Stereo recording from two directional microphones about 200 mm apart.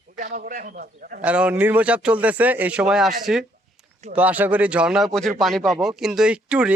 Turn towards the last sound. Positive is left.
turn(degrees=-5)  # may be behind; listen again after turning